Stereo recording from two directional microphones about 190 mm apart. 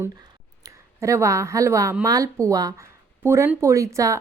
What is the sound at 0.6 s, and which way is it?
A woman's voice, 15° right (ahead or behind).